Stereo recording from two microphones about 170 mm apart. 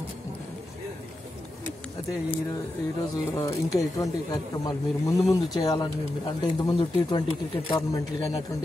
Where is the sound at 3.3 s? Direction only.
20° left (ahead or behind).